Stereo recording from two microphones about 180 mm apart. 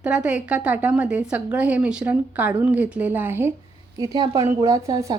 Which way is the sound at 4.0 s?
20° right (ahead or behind).